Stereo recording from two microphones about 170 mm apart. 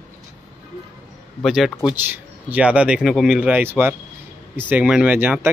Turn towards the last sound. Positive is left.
turn(degrees=-10)  # may be behind; listen again after turning